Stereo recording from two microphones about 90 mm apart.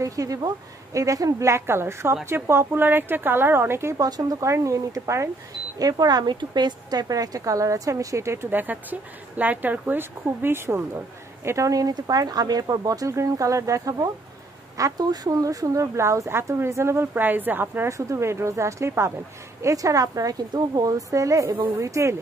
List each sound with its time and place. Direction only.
0.0 s a woman's voice: 40° right (ahead or behind)
4.0 s speech: 40° right (ahead or behind)
5.8 s a woman's voice: 45° right (ahead or behind); by 10.8 s 25° right (ahead or behind)
11.4 s speech: 35° right (ahead or behind); by 17.8 s 20° right (ahead or behind)
17.8 s speech: 35° right (ahead or behind)